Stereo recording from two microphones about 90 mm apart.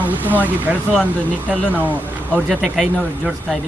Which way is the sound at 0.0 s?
20° right (ahead or behind).